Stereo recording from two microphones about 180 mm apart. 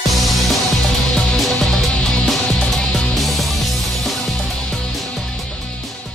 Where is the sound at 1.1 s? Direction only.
5° left (ahead or behind).